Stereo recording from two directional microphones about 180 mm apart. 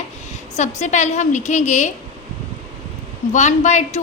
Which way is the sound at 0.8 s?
40° left (ahead or behind).